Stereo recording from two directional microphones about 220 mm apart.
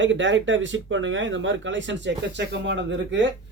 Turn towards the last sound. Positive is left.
turn(degrees=-55)  # may be behind; listen again after turning